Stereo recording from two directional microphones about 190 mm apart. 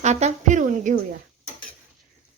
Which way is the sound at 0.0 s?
35° right (ahead or behind).